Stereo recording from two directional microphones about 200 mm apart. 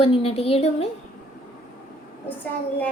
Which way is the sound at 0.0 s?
30° left (ahead or behind).